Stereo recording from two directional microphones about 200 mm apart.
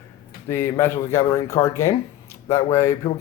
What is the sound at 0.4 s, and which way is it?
Speech, 10° left (ahead or behind).